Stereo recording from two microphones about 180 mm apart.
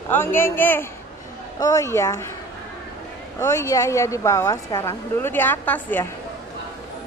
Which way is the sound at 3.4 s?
15° left (ahead or behind).